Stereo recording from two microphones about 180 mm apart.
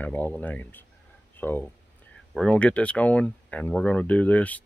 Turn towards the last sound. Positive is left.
turn(degrees=10)  # may be behind; listen again after turning